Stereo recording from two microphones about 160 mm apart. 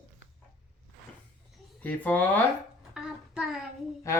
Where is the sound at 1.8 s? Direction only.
10° left (ahead or behind).